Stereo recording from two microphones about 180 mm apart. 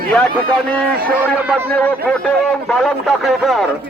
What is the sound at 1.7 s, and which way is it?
A man's voice, 5° left (ahead or behind).